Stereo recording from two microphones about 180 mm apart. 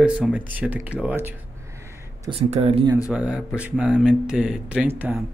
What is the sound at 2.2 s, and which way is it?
Speech, 35° right (ahead or behind).